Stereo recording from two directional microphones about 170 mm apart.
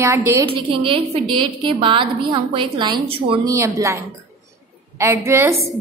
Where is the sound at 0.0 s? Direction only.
15° right (ahead or behind).